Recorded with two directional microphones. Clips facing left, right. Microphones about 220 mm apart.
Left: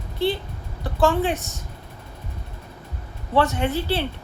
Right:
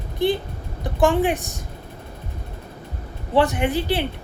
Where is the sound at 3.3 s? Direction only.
15° right (ahead or behind).